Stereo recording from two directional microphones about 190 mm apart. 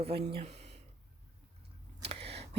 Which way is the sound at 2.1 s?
30° right (ahead or behind).